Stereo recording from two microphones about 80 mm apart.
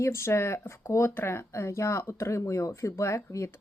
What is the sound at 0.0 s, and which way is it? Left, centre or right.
Speech, left.